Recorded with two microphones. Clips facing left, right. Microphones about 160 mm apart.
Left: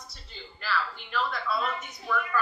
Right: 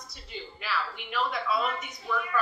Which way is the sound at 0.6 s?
5° right (ahead or behind).